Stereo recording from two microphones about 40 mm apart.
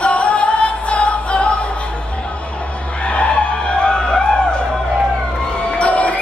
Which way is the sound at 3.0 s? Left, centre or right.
Left.